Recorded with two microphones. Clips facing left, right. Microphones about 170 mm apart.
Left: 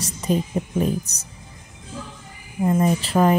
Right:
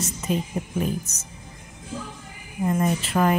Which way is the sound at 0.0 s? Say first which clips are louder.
Left 3 dB; 35° left (ahead or behind).